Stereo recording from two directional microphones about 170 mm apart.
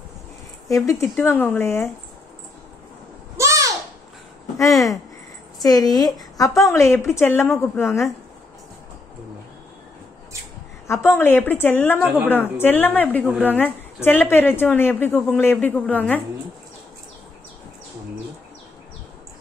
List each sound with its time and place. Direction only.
0.7 s a woman's voice: 20° left (ahead or behind)
3.3 s a sound: 15° right (ahead or behind)
4.6 s a woman's voice: 20° left (ahead or behind)
10.9 s a woman's voice: 15° left (ahead or behind)